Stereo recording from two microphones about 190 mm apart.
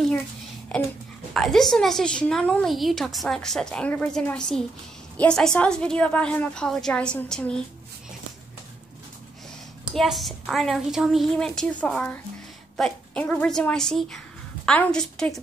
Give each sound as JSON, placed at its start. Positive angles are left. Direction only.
{"t": 0.7, "sound": "a sound", "side_deg": 5}
{"t": 1.3, "sound": "a woman's voice", "side_deg": 0}
{"t": 9.9, "sound": "a woman's voice", "side_deg": 0}